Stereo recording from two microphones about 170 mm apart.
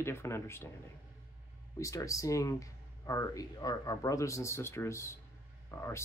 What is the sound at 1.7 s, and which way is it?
Speech, 20° left (ahead or behind).